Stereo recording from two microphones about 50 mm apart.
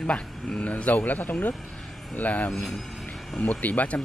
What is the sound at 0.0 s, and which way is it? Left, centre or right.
Speech, left.